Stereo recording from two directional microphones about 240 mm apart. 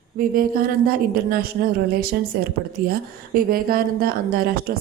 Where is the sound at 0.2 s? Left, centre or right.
Right.